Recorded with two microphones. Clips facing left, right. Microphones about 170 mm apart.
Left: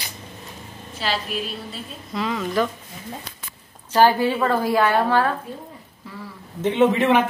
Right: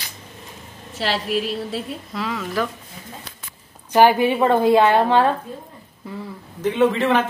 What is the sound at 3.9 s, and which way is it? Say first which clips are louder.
A woman's voice: right 2 dB; 15° right (ahead or behind).